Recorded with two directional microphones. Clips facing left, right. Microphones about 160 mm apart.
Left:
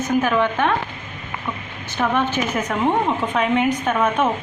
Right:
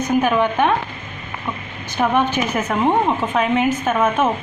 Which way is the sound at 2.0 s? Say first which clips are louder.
Right 3 dB; 15° right (ahead or behind).